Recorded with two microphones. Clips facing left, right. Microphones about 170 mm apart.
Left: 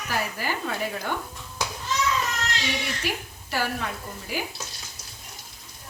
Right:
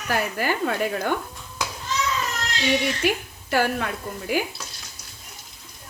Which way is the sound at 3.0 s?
60° right (ahead or behind).